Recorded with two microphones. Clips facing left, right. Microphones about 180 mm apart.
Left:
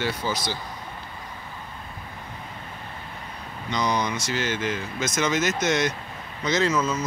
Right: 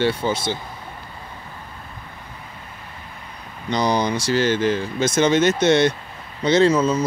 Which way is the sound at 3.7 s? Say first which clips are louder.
Right 5 dB; 35° right (ahead or behind).